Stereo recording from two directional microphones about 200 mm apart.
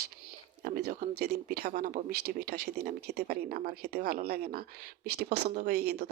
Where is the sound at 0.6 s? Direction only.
55° right (ahead or behind).